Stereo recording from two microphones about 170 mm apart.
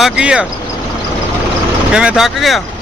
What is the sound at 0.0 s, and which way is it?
Speech, 5° right (ahead or behind).